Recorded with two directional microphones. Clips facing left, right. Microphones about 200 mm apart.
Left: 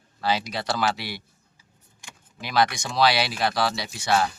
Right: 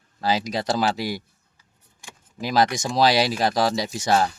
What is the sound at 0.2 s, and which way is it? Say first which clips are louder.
Speech: right 3 dB; 40° right (ahead or behind).